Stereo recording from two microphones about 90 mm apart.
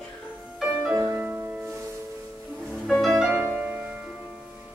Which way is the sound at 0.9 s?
25° right (ahead or behind).